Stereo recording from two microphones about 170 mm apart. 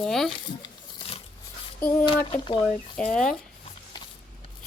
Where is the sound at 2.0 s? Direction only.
30° left (ahead or behind).